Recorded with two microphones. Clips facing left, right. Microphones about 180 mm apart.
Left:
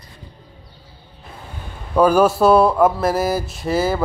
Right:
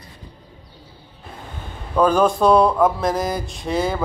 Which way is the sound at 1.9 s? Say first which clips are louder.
Left 2 dB; 10° left (ahead or behind).